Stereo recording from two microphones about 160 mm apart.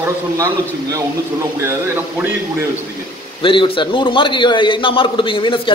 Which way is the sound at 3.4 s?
35° left (ahead or behind).